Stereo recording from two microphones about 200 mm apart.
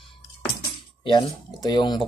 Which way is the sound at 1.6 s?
20° left (ahead or behind).